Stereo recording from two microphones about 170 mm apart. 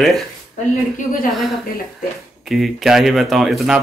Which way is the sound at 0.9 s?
55° left (ahead or behind).